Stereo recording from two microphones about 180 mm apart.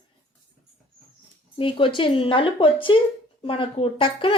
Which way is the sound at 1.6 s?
30° left (ahead or behind).